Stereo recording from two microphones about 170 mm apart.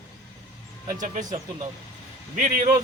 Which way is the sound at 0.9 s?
50° right (ahead or behind).